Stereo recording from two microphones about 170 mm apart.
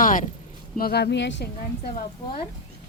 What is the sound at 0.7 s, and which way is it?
Speech, 65° left (ahead or behind).